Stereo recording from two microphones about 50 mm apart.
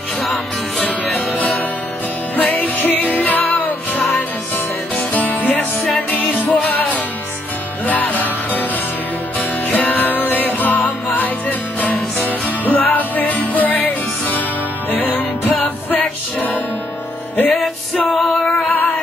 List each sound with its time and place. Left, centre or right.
0.2 s music: centre
2.3 s music: left
5.6 s music: centre
6.0 s music: left
7.8 s music: left
9.7 s music: left
17.5 s music: centre